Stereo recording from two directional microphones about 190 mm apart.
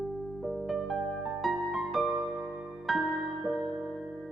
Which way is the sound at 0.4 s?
Centre (ahead or behind).